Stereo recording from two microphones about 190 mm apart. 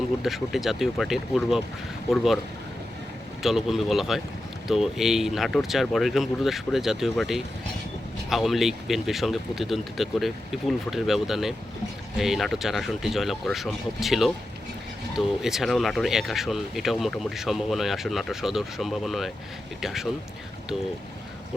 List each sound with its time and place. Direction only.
0.2 s speech: centre (ahead or behind)
3.4 s speech: centre (ahead or behind)
15.4 s speech: centre (ahead or behind)